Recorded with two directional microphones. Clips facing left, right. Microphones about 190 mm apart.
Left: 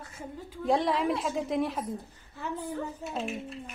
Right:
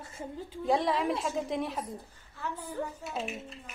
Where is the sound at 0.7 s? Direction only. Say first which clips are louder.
Left 2 dB; centre (ahead or behind).